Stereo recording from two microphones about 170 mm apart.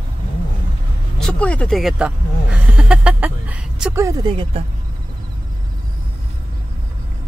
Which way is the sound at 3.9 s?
20° right (ahead or behind).